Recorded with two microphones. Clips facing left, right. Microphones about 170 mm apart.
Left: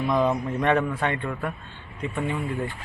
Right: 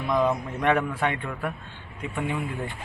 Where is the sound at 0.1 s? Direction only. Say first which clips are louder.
Even; 10° left (ahead or behind).